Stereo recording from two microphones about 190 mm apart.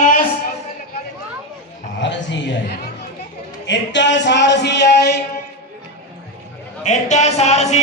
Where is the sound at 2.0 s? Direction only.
70° left (ahead or behind).